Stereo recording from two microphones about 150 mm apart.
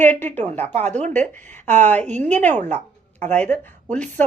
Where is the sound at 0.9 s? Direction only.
50° right (ahead or behind).